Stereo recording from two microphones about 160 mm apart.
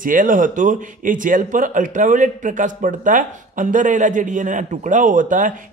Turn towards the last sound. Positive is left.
turn(degrees=-55)  # may be behind; listen again after turning